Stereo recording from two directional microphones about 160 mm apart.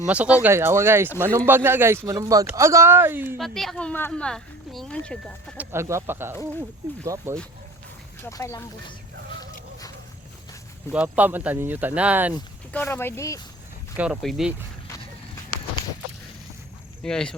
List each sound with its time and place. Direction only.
0.1 s speech: 10° right (ahead or behind)
3.3 s speech: centre (ahead or behind)
5.5 s speech: 15° right (ahead or behind)
8.3 s speech: 20° left (ahead or behind)
10.9 s speech: 10° right (ahead or behind)
12.7 s speech: 15° left (ahead or behind)
13.9 s speech: 5° right (ahead or behind)
17.0 s speech: 5° left (ahead or behind)